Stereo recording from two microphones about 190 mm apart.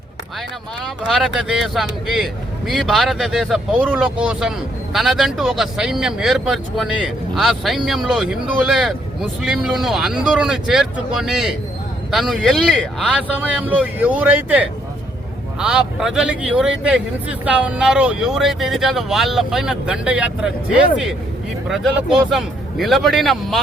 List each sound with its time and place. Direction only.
1.0 s speech: centre (ahead or behind)
21.7 s speech: centre (ahead or behind)